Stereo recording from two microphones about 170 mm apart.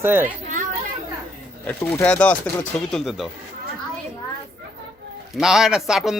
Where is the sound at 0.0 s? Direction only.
15° right (ahead or behind).